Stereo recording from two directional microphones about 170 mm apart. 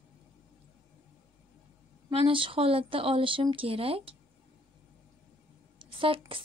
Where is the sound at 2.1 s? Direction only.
30° right (ahead or behind).